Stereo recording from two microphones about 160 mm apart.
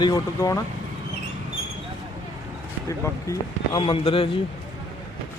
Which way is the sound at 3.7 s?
35° left (ahead or behind).